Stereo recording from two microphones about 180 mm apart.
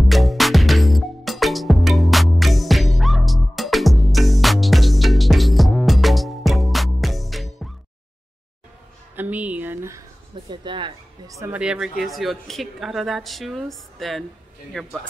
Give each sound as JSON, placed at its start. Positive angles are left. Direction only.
{"t": 0.1, "sound": "music", "side_deg": 0}
{"t": 9.1, "sound": "a sound", "side_deg": -10}
{"t": 10.5, "sound": "a woman's voice", "side_deg": -25}